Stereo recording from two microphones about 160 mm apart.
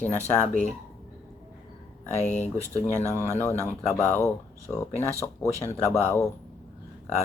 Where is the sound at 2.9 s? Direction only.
15° right (ahead or behind).